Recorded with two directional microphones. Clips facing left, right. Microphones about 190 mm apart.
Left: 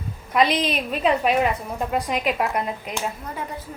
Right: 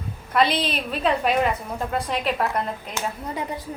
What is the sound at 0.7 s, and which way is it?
A woman's voice, 5° left (ahead or behind).